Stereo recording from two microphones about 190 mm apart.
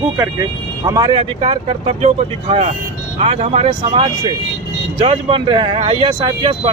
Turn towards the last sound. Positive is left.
turn(degrees=-25)  # may be behind; listen again after turning